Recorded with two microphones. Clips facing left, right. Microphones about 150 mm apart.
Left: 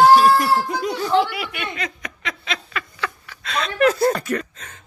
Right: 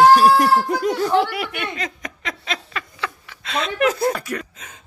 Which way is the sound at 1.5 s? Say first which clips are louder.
Right 1 dB; 40° right (ahead or behind).